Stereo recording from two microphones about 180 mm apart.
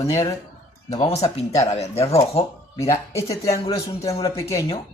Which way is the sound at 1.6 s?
35° left (ahead or behind).